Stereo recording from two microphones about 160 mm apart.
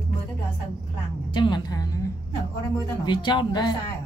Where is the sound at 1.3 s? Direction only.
30° left (ahead or behind).